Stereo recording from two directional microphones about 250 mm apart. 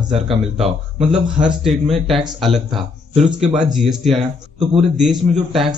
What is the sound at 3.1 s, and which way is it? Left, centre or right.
Speech, right.